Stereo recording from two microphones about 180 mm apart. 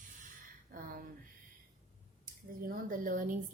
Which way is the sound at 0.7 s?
50° right (ahead or behind).